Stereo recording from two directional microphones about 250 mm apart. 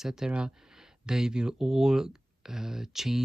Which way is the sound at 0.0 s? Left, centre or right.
Centre.